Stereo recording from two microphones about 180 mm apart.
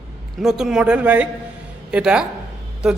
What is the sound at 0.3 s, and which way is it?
A man's voice, centre (ahead or behind).